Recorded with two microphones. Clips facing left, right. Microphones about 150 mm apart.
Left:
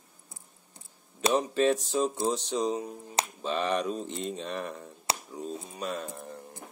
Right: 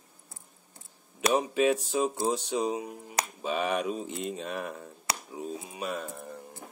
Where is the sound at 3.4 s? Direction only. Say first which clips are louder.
Even; 10° right (ahead or behind).